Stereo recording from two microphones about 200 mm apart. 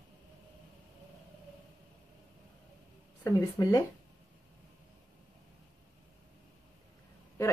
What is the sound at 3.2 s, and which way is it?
Speech, 15° left (ahead or behind).